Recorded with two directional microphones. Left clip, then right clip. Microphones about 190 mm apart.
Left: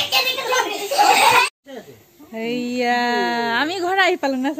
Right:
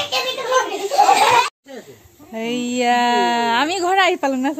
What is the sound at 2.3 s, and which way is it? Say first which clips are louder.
A woman's voice: right 1 dB; 25° right (ahead or behind).